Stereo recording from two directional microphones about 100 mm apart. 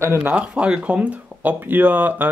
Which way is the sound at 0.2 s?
15° right (ahead or behind).